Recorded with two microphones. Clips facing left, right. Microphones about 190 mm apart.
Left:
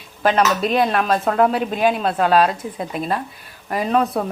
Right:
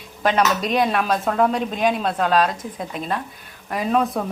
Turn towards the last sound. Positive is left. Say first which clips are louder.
# left 2 dB
turn(degrees=0)  # may be behind; listen again after turning